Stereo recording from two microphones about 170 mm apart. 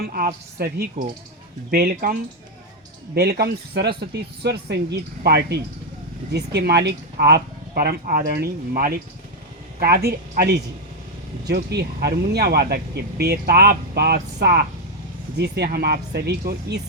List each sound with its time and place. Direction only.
0.0 s speech: 60° right (ahead or behind)
3.2 s speech: 70° right (ahead or behind)